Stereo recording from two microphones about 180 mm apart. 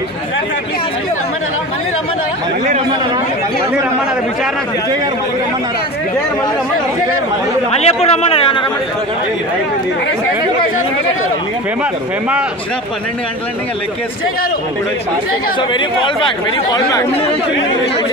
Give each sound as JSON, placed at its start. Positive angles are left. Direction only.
{"t": 7.8, "sound": "a man's voice", "side_deg": 35}
{"t": 15.7, "sound": "speech", "side_deg": 30}